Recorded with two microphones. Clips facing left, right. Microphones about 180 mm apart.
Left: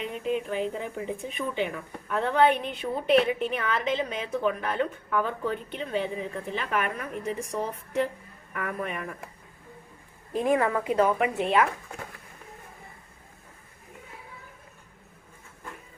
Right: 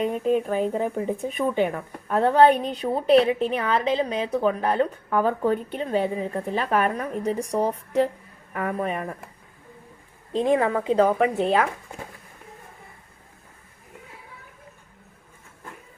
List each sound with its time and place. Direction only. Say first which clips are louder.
0.0 s speech: right 7 dB; 45° right (ahead or behind)
10.3 s a woman's voice: right 3 dB; 25° right (ahead or behind)